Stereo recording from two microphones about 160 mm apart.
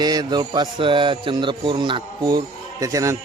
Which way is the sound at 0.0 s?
25° right (ahead or behind).